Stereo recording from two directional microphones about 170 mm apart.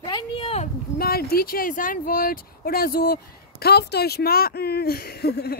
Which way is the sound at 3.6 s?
70° left (ahead or behind).